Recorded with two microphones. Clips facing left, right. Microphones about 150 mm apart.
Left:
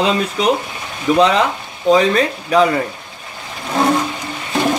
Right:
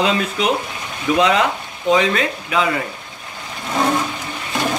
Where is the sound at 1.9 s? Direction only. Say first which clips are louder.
Left 4 dB; 35° left (ahead or behind).